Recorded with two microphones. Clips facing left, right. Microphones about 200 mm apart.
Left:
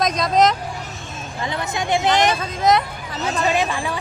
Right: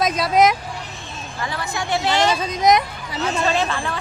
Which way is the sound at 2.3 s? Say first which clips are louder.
Right 1 dB; 15° right (ahead or behind).